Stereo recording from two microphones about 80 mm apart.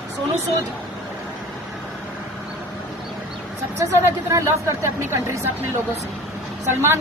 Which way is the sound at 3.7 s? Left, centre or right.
Right.